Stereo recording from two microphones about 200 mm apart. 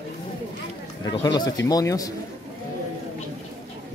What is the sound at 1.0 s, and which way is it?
Speech, 20° left (ahead or behind).